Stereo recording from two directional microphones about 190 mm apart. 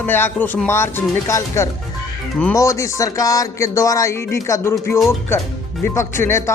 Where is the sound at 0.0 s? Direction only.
10° left (ahead or behind).